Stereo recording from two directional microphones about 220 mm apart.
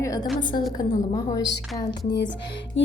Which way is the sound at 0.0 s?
15° left (ahead or behind).